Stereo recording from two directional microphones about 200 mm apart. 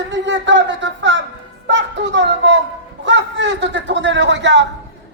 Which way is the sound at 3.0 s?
65° right (ahead or behind).